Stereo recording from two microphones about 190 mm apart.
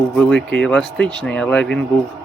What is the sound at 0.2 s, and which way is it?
Speech, 5° left (ahead or behind).